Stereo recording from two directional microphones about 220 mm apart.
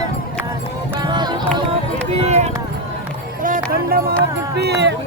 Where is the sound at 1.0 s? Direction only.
20° right (ahead or behind).